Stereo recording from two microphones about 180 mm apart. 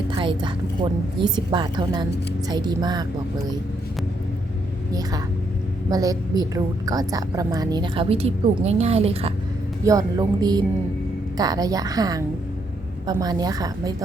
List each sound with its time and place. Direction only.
0.1 s a woman's voice: 25° right (ahead or behind)
4.9 s a woman's voice: 20° right (ahead or behind)
9.8 s a woman's voice: 20° right (ahead or behind)